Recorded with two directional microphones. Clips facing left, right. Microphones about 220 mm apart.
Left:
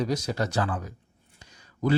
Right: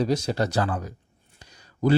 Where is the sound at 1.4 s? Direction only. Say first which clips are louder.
Right 4 dB; 35° right (ahead or behind).